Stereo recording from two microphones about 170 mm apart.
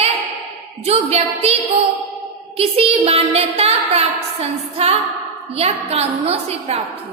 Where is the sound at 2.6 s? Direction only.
35° right (ahead or behind).